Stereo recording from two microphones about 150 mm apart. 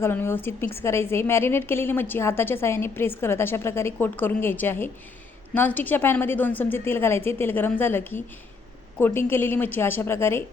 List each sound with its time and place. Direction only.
0.0 s a woman's voice: 15° left (ahead or behind)